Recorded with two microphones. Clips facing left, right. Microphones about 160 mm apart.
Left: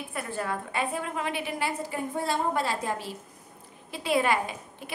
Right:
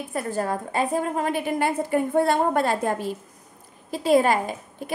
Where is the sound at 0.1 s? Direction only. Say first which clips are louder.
Right 7 dB; 40° right (ahead or behind).